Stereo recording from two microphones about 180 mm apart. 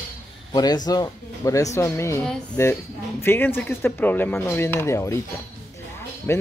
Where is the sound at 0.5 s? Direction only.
20° left (ahead or behind).